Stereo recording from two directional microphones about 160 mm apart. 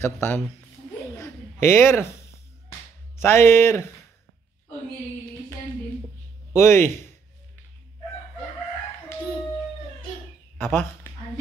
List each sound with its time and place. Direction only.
0.0 s speech: 15° left (ahead or behind)
1.1 s a sound: 15° left (ahead or behind)
3.2 s speech: 15° left (ahead or behind)
6.5 s speech: 15° left (ahead or behind)
10.6 s speech: 15° left (ahead or behind)